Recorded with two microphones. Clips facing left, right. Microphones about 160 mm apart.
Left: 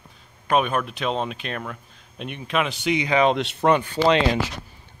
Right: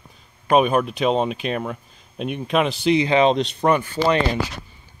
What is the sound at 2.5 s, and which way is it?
Speech, 35° right (ahead or behind).